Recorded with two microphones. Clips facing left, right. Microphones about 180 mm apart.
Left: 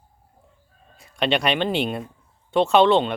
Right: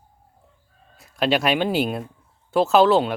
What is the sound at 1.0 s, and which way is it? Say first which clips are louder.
Speech: right 1 dB; centre (ahead or behind).